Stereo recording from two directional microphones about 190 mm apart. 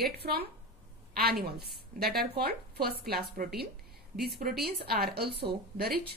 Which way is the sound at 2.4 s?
55° right (ahead or behind).